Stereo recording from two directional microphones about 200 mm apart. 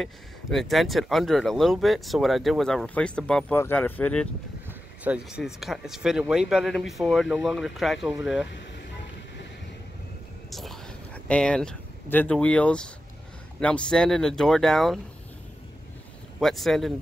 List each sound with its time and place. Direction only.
0.0 s speech: centre (ahead or behind)
4.6 s speech: 5° right (ahead or behind)
8.5 s vehicle: 60° left (ahead or behind)
10.5 s a sound: centre (ahead or behind)
11.2 s speech: 5° left (ahead or behind)
16.3 s speech: centre (ahead or behind)